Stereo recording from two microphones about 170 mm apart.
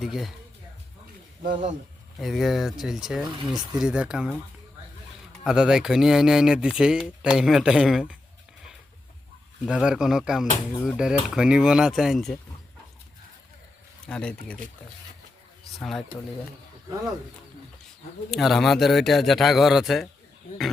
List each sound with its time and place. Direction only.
0.0 s speech: centre (ahead or behind)
1.4 s speech: 50° right (ahead or behind)
2.1 s speech: centre (ahead or behind)
5.4 s speech: 5° right (ahead or behind)
9.6 s speech: 5° right (ahead or behind)
14.1 s speech: 5° left (ahead or behind)
15.8 s speech: centre (ahead or behind)
18.3 s speech: centre (ahead or behind)